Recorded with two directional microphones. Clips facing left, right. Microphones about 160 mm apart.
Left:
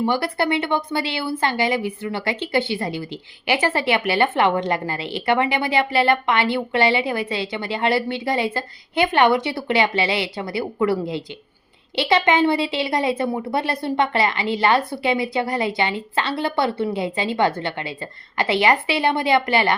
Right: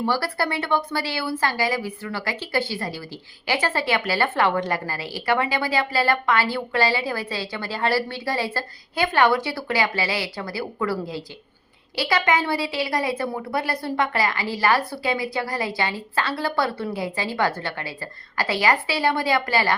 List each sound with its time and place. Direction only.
0.0 s a woman's voice: 20° left (ahead or behind)